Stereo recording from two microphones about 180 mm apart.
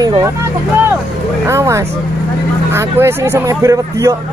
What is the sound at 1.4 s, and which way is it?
Speech, 15° right (ahead or behind).